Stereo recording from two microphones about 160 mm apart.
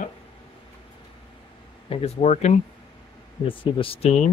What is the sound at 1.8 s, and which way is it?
Speech, 40° left (ahead or behind).